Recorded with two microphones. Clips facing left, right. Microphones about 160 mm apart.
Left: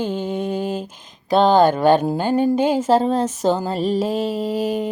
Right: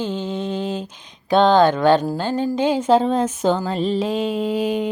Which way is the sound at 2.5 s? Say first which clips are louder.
Even; 10° left (ahead or behind).